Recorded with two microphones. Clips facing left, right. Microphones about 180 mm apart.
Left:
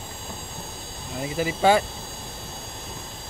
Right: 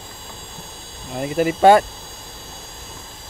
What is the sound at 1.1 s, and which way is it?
Speech, 55° right (ahead or behind).